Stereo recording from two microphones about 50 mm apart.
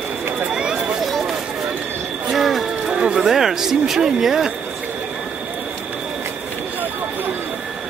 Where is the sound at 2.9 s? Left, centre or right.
Centre.